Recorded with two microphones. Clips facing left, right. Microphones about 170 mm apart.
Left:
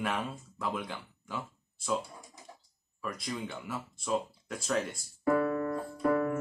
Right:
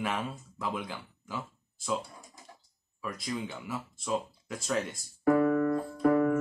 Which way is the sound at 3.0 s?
Centre (ahead or behind).